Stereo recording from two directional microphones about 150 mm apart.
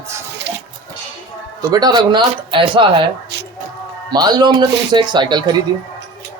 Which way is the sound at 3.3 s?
90° right.